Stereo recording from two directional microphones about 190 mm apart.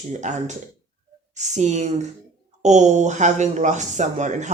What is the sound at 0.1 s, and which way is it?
Speech, 40° right (ahead or behind).